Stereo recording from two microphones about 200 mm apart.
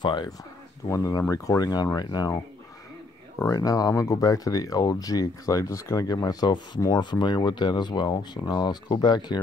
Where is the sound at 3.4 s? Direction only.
15° left (ahead or behind).